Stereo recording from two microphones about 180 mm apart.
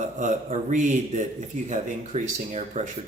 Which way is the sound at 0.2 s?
45° right (ahead or behind).